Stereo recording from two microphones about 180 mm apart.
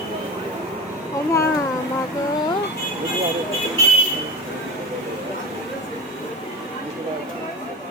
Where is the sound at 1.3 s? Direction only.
15° left (ahead or behind).